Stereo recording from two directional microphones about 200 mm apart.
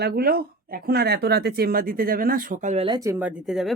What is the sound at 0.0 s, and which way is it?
Speech, 50° right (ahead or behind).